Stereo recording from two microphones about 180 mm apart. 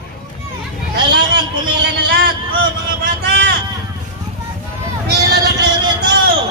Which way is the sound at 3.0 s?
60° right (ahead or behind).